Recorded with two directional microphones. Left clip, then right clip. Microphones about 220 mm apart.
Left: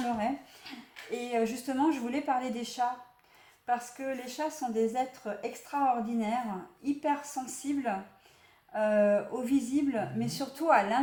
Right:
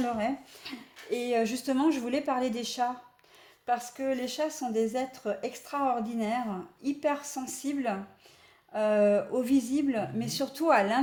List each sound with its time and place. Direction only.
0.7 s speech: 45° right (ahead or behind)